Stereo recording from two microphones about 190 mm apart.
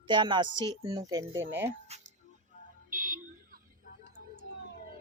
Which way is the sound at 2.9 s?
45° right (ahead or behind).